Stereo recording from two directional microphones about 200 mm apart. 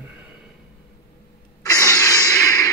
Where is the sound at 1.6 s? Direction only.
15° left (ahead or behind).